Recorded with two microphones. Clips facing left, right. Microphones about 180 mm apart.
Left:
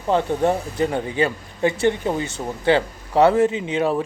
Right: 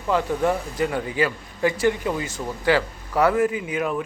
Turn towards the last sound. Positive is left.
turn(degrees=30)  # may be behind; listen again after turning